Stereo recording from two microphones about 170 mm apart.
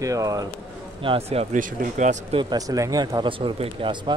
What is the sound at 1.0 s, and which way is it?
Speech, 35° right (ahead or behind).